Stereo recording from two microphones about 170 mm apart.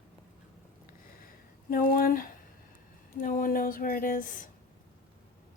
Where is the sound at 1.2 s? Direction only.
60° left (ahead or behind).